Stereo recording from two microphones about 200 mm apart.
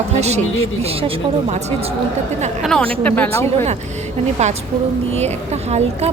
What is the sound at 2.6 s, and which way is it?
Speech, 5° left (ahead or behind).